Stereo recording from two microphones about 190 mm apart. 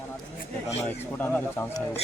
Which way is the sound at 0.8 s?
10° left (ahead or behind).